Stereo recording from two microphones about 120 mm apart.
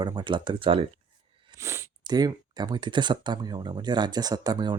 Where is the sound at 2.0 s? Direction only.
35° right (ahead or behind).